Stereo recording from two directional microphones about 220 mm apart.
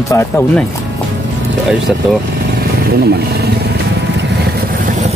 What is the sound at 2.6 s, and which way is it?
Vehicle, 45° right (ahead or behind).